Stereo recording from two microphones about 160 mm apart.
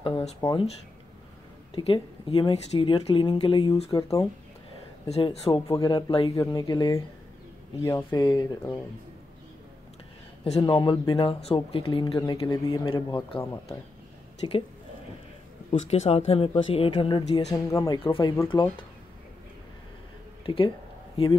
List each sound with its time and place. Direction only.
0.0 s a sound: 35° left (ahead or behind)
0.4 s speech: 25° left (ahead or behind)
1.8 s speech: 30° left (ahead or behind)
3.9 s speech: 20° left (ahead or behind)
5.0 s speech: 40° left (ahead or behind)
5.5 s speech: 25° left (ahead or behind)
10.6 s speech: 30° left (ahead or behind)
14.4 s speech: 30° left (ahead or behind)
15.9 s speech: 45° left (ahead or behind)
17.3 s speech: 45° left (ahead or behind)
17.6 s speech: 20° left (ahead or behind)
20.4 s speech: 30° left (ahead or behind)